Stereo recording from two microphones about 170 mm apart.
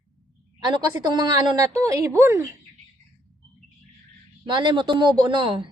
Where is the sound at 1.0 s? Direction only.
25° right (ahead or behind).